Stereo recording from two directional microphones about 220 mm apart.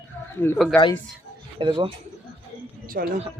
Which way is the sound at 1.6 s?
25° right (ahead or behind).